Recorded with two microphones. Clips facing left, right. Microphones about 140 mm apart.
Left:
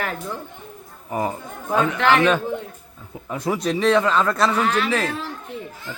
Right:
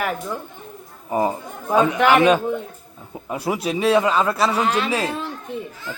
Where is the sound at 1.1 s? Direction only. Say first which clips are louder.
Right 4 dB; 20° right (ahead or behind).